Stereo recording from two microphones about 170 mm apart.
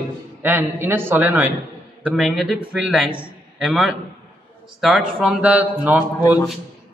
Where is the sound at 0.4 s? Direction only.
10° right (ahead or behind).